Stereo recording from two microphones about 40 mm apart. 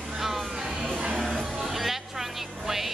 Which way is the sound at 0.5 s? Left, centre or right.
Right.